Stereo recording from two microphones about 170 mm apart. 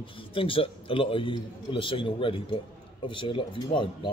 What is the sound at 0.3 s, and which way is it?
A man's voice, 30° left (ahead or behind).